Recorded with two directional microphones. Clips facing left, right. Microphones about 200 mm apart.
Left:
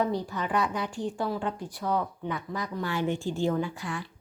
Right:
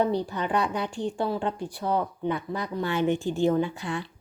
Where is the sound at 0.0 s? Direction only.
30° right (ahead or behind).